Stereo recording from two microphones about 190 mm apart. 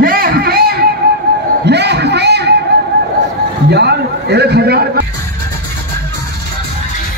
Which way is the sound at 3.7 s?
60° right (ahead or behind).